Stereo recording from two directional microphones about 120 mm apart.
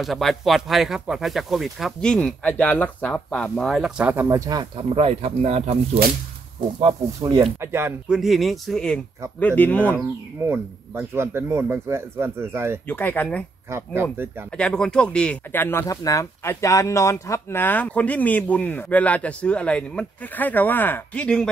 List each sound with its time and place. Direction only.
0.0 s speech: centre (ahead or behind)
4.3 s speech: 30° right (ahead or behind)
4.7 s speech: 55° right (ahead or behind)
7.6 s speech: 20° right (ahead or behind)
8.1 s speech: centre (ahead or behind)
10.4 s speech: 20° right (ahead or behind)
12.8 s speech: 15° left (ahead or behind)
13.7 s speech: 20° right (ahead or behind)
14.5 s speech: 10° left (ahead or behind)